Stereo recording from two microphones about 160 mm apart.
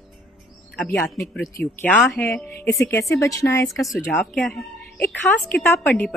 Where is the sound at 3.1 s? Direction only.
20° left (ahead or behind).